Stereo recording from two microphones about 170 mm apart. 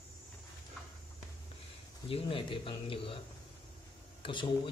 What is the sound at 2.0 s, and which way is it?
Speech, 30° left (ahead or behind).